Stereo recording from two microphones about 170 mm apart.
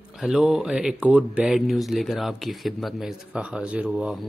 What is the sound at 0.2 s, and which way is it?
Speech, 5° right (ahead or behind).